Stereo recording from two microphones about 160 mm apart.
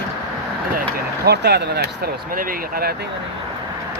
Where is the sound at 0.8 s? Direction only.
85° right; by 2.9 s 65° right (ahead or behind).